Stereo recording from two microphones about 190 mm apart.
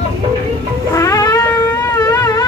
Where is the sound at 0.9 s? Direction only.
15° left (ahead or behind).